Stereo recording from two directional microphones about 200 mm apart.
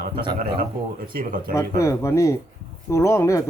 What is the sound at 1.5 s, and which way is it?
Speech, 15° left (ahead or behind).